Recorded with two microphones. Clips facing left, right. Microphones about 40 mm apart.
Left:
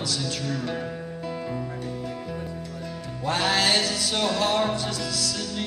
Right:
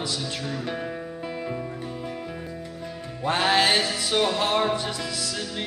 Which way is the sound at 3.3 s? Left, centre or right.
Right.